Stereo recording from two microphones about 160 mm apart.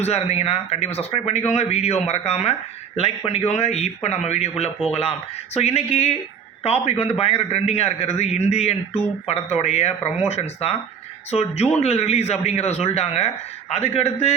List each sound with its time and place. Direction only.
0.0 s speech: 40° left (ahead or behind)